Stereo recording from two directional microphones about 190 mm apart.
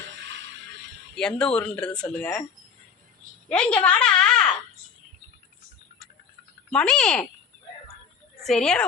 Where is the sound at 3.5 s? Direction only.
5° left (ahead or behind).